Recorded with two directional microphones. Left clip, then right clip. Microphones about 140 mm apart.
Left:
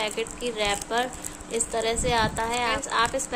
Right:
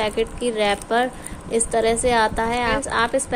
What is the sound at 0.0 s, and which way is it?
Speech, 35° right (ahead or behind).